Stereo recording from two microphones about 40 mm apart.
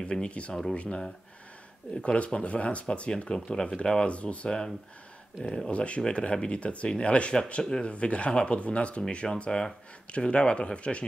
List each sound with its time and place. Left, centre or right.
0.0 s speech: left
3.3 s speech: centre
5.7 s speech: left